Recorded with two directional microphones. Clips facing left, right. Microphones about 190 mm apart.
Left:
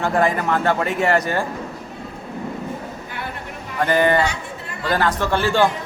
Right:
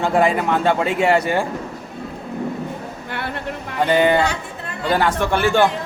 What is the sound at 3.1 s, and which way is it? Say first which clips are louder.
Vehicle: right 8 dB; 70° right (ahead or behind).